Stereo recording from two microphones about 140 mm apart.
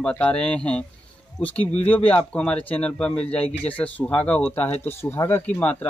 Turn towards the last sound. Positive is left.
turn(degrees=10)  # may be behind; listen again after turning